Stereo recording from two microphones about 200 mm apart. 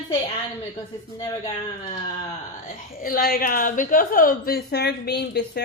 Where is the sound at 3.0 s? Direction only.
45° left (ahead or behind).